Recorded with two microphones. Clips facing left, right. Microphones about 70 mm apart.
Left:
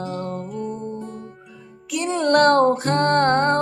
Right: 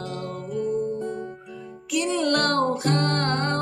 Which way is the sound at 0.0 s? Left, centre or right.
Left.